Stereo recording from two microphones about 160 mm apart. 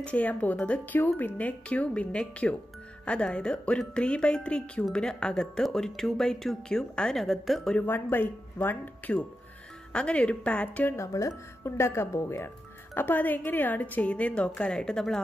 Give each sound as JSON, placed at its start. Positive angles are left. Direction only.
{"t": 0.0, "sound": "a woman's voice", "side_deg": 10}